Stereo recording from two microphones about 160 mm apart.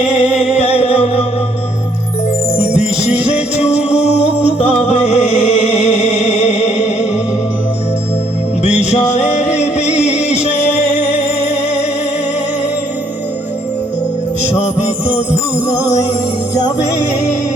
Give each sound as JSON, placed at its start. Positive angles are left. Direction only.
{"t": 0.1, "sound": "music", "side_deg": 40}
{"t": 2.6, "sound": "music", "side_deg": 40}
{"t": 8.6, "sound": "music", "side_deg": 45}